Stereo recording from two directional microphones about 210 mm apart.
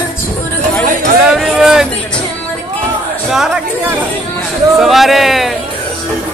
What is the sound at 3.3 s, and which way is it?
Chatter, centre (ahead or behind).